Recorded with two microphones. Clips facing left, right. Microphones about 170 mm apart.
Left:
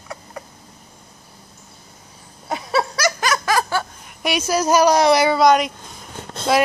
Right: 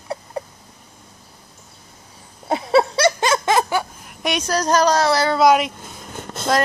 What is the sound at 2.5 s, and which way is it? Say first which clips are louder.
Snicker: right 5 dB; 25° right (ahead or behind).